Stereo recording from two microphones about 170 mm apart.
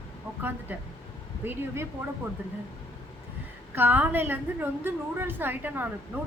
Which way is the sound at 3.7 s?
10° right (ahead or behind).